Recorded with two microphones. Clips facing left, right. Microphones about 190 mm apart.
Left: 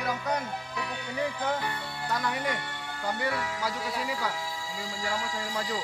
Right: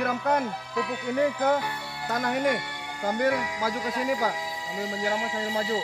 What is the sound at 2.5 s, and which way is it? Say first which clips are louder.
Music: right 3 dB; 15° right (ahead or behind).